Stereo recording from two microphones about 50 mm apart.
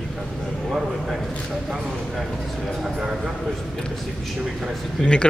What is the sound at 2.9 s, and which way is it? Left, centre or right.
Speech, centre.